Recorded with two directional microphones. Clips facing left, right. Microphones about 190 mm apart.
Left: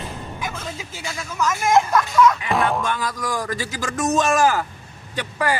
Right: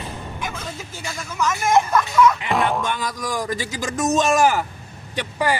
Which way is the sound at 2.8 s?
20° right (ahead or behind).